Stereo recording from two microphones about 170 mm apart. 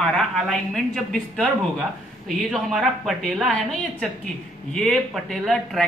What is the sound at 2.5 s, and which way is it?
Speech, centre (ahead or behind).